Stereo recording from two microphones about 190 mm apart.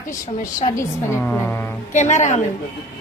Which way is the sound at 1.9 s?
40° left (ahead or behind).